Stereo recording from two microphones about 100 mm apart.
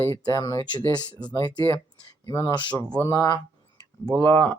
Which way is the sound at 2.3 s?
30° left (ahead or behind).